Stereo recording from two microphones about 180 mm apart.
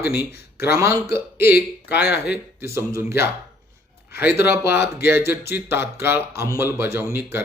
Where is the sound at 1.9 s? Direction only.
65° left (ahead or behind).